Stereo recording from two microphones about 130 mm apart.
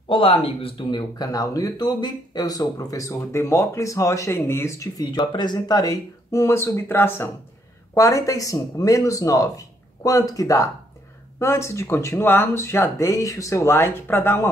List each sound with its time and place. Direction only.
0.1 s speech: 45° left (ahead or behind); by 14.5 s 15° left (ahead or behind)